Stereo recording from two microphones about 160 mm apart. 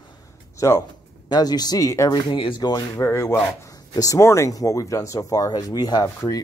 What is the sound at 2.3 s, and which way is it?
Speech, 30° left (ahead or behind).